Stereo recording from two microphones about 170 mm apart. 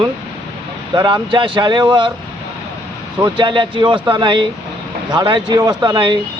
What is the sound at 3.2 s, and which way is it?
A man's voice, 30° right (ahead or behind).